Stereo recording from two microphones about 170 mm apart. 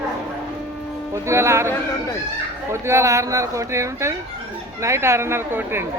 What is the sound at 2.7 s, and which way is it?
Speech, 15° right (ahead or behind).